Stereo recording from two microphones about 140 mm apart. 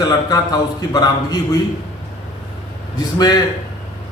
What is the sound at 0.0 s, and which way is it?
Speech, 25° left (ahead or behind).